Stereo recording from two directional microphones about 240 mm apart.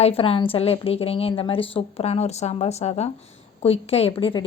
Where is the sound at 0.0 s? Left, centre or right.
Left.